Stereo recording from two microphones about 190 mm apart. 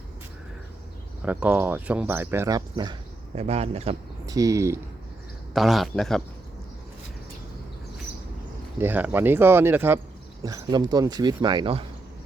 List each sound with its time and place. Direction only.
1.2 s speech: 10° right (ahead or behind)
2.6 s speech: 25° right (ahead or behind)
3.3 s speech: 35° right (ahead or behind)
4.3 s speech: 15° right (ahead or behind)
5.5 s a man's voice: centre (ahead or behind)
8.8 s speech: 10° right (ahead or behind); by 11.9 s 25° right (ahead or behind)